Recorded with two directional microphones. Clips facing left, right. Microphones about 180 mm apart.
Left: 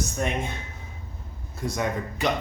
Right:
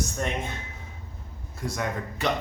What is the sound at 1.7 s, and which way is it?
Speech, 20° left (ahead or behind).